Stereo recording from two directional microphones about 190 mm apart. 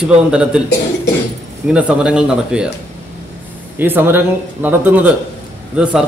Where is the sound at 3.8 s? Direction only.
10° right (ahead or behind).